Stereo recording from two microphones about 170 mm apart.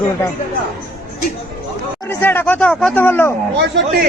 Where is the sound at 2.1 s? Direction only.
10° left (ahead or behind).